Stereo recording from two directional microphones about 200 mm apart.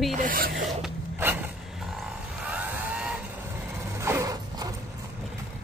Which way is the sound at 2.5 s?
5° right (ahead or behind).